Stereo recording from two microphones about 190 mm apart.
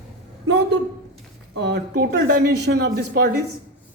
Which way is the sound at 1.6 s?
65° right (ahead or behind).